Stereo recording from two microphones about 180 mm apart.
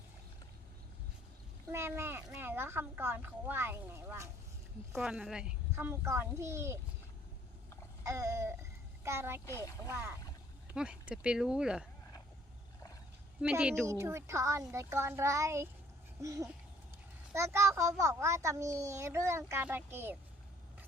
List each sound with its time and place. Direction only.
1.7 s a child's voice: 15° right (ahead or behind)
8.0 s a child's voice: 15° right (ahead or behind)
9.5 s speech: 15° left (ahead or behind)
9.9 s a child's voice: 10° right (ahead or behind)
13.4 s a child's voice: 5° right (ahead or behind)